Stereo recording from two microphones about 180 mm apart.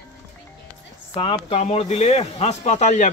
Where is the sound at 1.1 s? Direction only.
25° left (ahead or behind).